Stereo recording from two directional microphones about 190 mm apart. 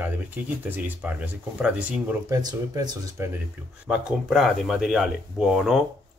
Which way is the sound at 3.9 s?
5° right (ahead or behind).